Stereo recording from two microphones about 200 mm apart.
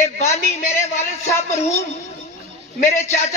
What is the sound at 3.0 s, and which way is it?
Speech, 30° left (ahead or behind).